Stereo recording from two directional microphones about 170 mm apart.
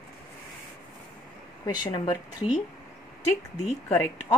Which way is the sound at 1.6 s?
25° left (ahead or behind).